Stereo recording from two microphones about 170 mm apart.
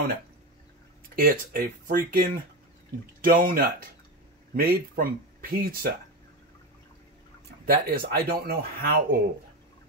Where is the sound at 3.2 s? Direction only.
60° right (ahead or behind).